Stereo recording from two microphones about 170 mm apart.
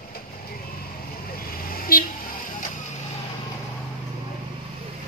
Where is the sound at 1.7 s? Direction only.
60° left (ahead or behind).